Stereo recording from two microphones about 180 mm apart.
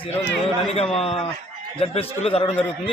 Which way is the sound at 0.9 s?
35° left (ahead or behind).